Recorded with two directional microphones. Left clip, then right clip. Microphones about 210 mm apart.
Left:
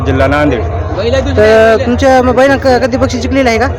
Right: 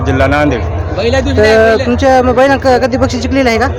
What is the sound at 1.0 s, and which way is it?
Speech, 55° right (ahead or behind).